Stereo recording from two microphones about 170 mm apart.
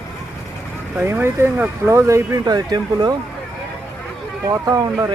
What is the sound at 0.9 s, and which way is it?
Speech, 10° right (ahead or behind).